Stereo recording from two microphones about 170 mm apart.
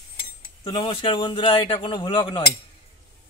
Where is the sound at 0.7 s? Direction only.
30° left (ahead or behind).